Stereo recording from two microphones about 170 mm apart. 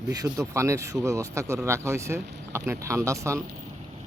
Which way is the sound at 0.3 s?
15° right (ahead or behind).